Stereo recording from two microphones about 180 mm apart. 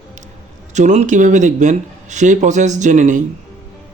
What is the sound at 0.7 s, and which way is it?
Speech, 40° right (ahead or behind).